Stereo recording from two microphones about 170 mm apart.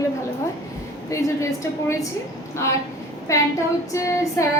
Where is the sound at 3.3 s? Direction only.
20° left (ahead or behind).